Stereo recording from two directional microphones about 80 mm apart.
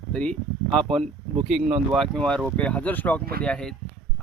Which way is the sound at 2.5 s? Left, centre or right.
Centre.